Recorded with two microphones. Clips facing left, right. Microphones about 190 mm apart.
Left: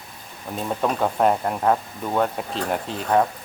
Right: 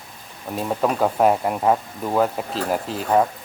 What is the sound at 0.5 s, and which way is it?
Speech, 5° right (ahead or behind).